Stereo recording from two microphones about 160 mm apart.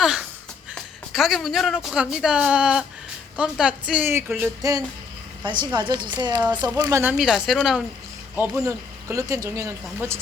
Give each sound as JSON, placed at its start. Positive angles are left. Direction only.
{"t": 0.0, "sound": "a sound", "side_deg": -5}
{"t": 1.1, "sound": "speech", "side_deg": 0}
{"t": 5.4, "sound": "a woman's voice", "side_deg": -30}
{"t": 8.4, "sound": "speech", "side_deg": -15}